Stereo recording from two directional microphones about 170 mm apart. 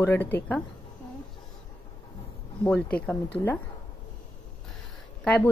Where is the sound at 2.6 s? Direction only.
10° left (ahead or behind).